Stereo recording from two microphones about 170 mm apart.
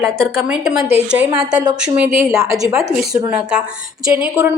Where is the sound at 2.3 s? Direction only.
20° right (ahead or behind).